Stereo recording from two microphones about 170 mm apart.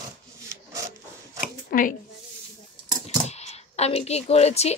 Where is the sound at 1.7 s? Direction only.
55° left (ahead or behind).